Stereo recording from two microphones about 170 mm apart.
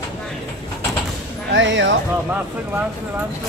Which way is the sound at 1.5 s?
90° right.